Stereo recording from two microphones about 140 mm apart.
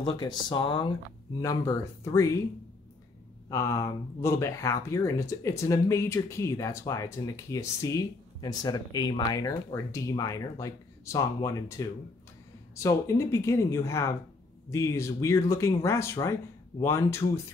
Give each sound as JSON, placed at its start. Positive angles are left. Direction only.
{"t": 0.0, "sound": "speech", "side_deg": 30}
{"t": 2.0, "sound": "speech", "side_deg": 20}
{"t": 3.4, "sound": "speech", "side_deg": 20}